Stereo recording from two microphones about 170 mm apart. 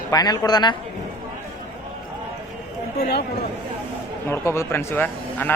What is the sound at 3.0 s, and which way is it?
Speech, 70° left (ahead or behind).